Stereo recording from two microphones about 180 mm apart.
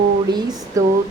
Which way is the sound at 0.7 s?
20° right (ahead or behind).